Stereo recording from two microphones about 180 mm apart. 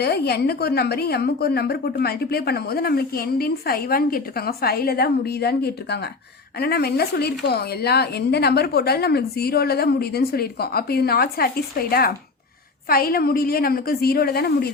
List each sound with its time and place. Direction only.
0.0 s a woman's voice: 65° left (ahead or behind)